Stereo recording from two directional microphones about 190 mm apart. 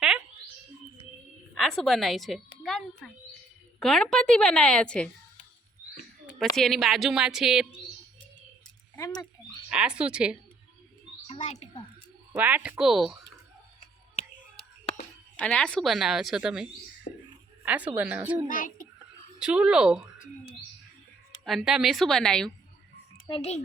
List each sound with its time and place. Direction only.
1.5 s a woman's voice: centre (ahead or behind)
6.6 s a woman's voice: centre (ahead or behind)
9.6 s a woman's voice: 5° right (ahead or behind)
11.3 s speech: 40° left (ahead or behind)
12.3 s a woman's voice: 10° right (ahead or behind)
14.2 s a sound: 35° left (ahead or behind)
15.4 s a woman's voice: 5° left (ahead or behind)
17.1 s a sound: 50° left (ahead or behind)
17.7 s speech: 10° right (ahead or behind)
18.4 s speech: 45° left (ahead or behind)
19.4 s a woman's voice: 5° right (ahead or behind)
21.4 s a woman's voice: centre (ahead or behind)
23.2 s frog: 30° left (ahead or behind)